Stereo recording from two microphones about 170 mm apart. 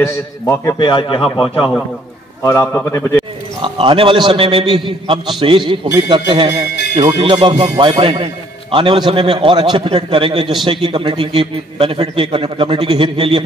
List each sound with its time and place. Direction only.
0.0 s a man's voice: 15° left (ahead or behind)
0.7 s speech: 30° left (ahead or behind)
2.4 s a man's voice: 15° left (ahead or behind)
3.6 s a man's voice: 30° right (ahead or behind)